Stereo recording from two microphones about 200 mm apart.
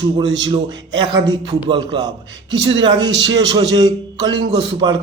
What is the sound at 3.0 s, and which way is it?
Speech, 65° right (ahead or behind).